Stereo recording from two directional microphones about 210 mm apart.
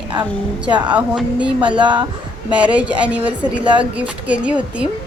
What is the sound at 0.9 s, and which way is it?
Speech, 5° right (ahead or behind).